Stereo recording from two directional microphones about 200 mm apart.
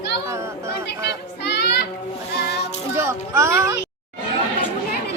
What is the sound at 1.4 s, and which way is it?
Child singing, 55° left (ahead or behind).